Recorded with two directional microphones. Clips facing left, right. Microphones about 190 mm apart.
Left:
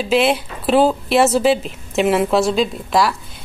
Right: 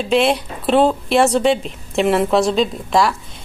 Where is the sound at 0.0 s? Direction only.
Centre (ahead or behind).